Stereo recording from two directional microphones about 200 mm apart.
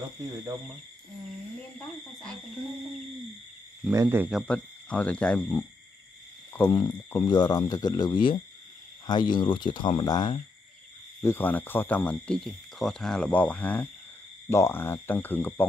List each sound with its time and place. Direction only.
3.9 s speech: 15° right (ahead or behind); by 5.6 s 5° left (ahead or behind)
6.7 s speech: 20° left (ahead or behind)
11.2 s speech: 10° left (ahead or behind)